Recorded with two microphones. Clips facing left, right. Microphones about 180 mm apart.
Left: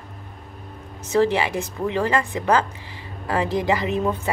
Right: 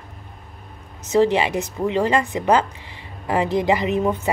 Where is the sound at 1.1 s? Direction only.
20° right (ahead or behind).